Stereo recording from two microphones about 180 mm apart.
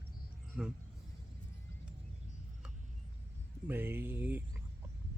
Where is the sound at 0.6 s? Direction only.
5° right (ahead or behind).